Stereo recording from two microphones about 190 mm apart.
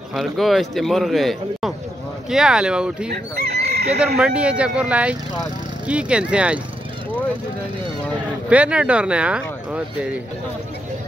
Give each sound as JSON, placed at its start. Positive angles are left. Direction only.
{"t": 0.1, "sound": "a man's voice", "side_deg": 0}
{"t": 3.1, "sound": "chicken", "side_deg": -60}
{"t": 4.2, "sound": "a man's voice", "side_deg": -5}
{"t": 8.5, "sound": "a man's voice", "side_deg": -5}